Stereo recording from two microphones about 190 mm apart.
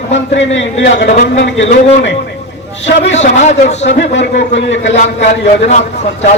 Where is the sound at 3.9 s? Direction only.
65° left (ahead or behind).